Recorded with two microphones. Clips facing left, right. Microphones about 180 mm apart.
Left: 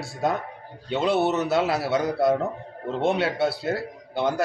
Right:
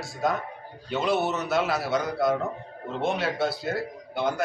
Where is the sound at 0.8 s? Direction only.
30° left (ahead or behind).